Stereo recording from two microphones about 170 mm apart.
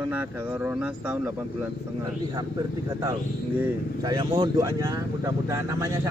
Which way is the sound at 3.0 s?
20° right (ahead or behind).